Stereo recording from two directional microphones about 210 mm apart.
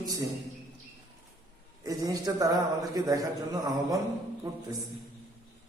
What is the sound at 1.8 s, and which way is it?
A man's voice, 15° right (ahead or behind).